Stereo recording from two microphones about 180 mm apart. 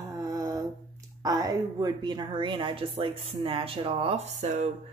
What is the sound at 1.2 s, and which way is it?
A woman's voice, 20° right (ahead or behind).